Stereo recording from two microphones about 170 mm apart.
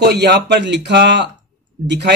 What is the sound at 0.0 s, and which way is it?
Speech, 75° right (ahead or behind).